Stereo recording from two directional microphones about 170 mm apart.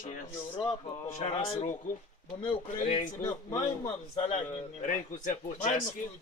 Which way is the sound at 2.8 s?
50° left (ahead or behind).